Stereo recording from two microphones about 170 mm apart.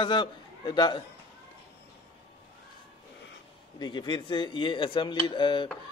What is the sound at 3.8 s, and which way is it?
A man's voice, 25° left (ahead or behind).